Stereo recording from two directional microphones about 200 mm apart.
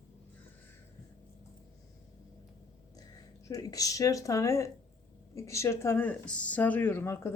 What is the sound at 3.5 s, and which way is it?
Speech, 15° left (ahead or behind).